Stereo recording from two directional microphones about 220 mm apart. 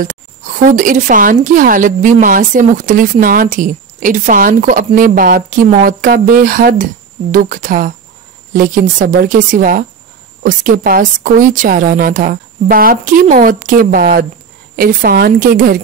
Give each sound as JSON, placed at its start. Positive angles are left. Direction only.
{"t": 0.0, "sound": "speech", "side_deg": -35}